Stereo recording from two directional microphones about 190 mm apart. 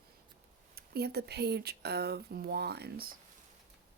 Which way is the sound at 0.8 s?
60° right (ahead or behind).